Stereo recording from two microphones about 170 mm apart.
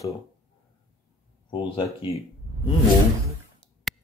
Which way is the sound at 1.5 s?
30° left (ahead or behind).